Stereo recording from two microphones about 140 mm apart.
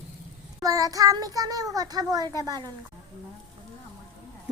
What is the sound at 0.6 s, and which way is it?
A child's voice, 25° right (ahead or behind).